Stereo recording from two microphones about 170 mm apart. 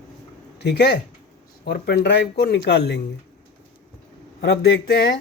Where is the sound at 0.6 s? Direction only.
85° left.